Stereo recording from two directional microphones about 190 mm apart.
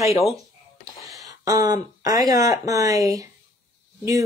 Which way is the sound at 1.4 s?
20° right (ahead or behind).